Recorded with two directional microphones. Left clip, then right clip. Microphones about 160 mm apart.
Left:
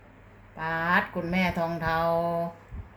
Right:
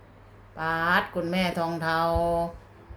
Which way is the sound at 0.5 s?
20° right (ahead or behind).